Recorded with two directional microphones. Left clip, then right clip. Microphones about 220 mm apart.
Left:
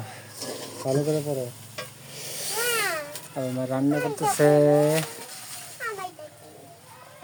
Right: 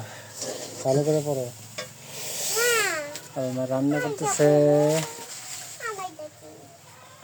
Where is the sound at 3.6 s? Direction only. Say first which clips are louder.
Right 2 dB; 10° left (ahead or behind).